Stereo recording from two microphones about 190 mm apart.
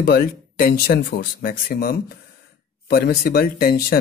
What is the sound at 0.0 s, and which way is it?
Speech, 50° left (ahead or behind).